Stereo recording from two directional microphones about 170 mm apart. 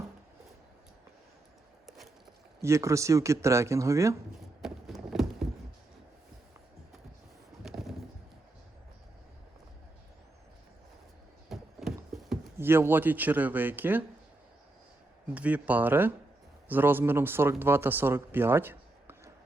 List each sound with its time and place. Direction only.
2.6 s speech: 15° right (ahead or behind)
4.6 s a sound: centre (ahead or behind)
7.6 s a sound: centre (ahead or behind)
11.4 s horse: centre (ahead or behind)
12.5 s speech: 15° right (ahead or behind)
15.4 s speech: 10° right (ahead or behind)